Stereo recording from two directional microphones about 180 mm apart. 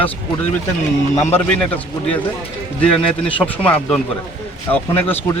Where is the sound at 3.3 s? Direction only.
10° left (ahead or behind).